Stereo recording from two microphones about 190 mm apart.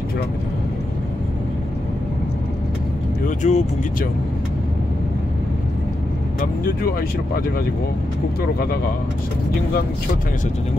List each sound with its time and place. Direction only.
3.3 s speech: 40° left (ahead or behind)
6.4 s speech: 50° left (ahead or behind)